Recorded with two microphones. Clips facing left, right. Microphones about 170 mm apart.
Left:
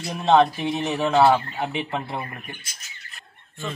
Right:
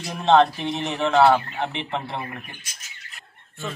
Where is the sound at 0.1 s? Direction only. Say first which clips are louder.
Even; centre (ahead or behind).